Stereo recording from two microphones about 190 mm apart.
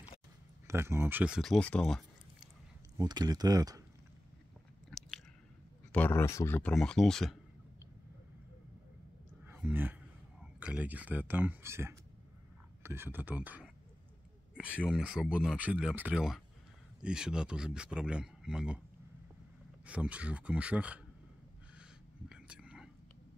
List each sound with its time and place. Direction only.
0.7 s speech: 15° right (ahead or behind); by 2.5 s centre (ahead or behind)
3.0 s speech: 20° right (ahead or behind)
4.9 s biting: centre (ahead or behind)
5.9 s speech: 10° left (ahead or behind)
9.5 s speech: 10° right (ahead or behind)
14.5 s a sound: 5° right (ahead or behind)
14.9 s speech: 5° right (ahead or behind)
19.9 s speech: 5° right (ahead or behind)
22.3 s whispering: 5° right (ahead or behind)